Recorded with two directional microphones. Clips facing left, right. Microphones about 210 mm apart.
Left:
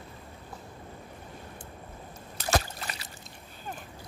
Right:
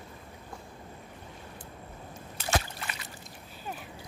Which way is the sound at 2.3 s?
40° left (ahead or behind).